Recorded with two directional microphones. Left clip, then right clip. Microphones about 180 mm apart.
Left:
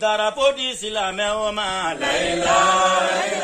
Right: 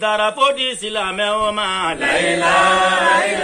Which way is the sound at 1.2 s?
90° left.